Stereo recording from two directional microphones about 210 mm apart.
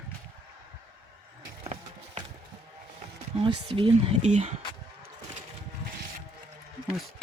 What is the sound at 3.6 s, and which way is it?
Speech, 25° right (ahead or behind).